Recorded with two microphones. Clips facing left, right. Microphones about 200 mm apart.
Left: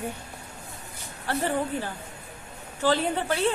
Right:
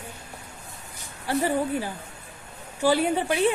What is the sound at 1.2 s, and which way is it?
Speech, 10° right (ahead or behind).